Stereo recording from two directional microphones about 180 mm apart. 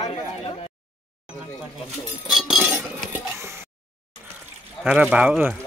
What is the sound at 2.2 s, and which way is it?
Chink, 5° right (ahead or behind).